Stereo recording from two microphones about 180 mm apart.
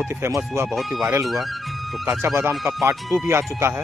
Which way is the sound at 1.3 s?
Centre (ahead or behind).